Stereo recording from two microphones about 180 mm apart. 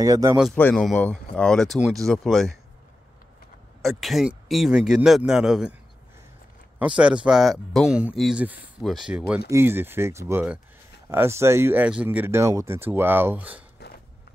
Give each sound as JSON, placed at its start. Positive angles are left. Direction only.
{"t": 0.0, "sound": "speech", "side_deg": -20}
{"t": 0.6, "sound": "speech", "side_deg": 5}
{"t": 3.8, "sound": "speech", "side_deg": 0}
{"t": 7.2, "sound": "speech", "side_deg": 0}
{"t": 13.7, "sound": "a sound", "side_deg": 65}